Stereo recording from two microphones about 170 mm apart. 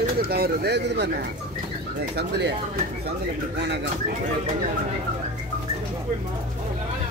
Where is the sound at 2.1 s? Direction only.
75° right (ahead or behind).